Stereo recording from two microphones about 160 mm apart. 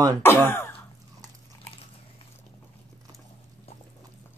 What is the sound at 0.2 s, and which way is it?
Speech, 15° left (ahead or behind).